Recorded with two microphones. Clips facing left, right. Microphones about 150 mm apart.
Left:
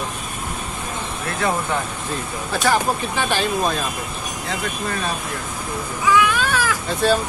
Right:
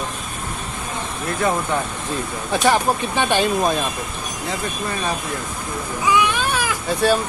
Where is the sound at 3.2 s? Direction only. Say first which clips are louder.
Right 5 dB; 20° right (ahead or behind).